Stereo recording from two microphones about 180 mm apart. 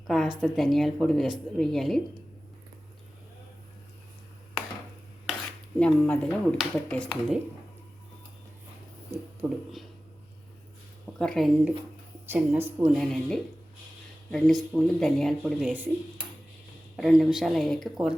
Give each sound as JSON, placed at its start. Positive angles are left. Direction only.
{"t": 0.1, "sound": "speech", "side_deg": 0}
{"t": 5.8, "sound": "speech", "side_deg": 5}
{"t": 9.4, "sound": "speech", "side_deg": -20}
{"t": 11.2, "sound": "speech", "side_deg": 0}
{"t": 12.3, "sound": "speech", "side_deg": -10}
{"t": 12.9, "sound": "speech", "side_deg": 5}
{"t": 15.7, "sound": "speech", "side_deg": -10}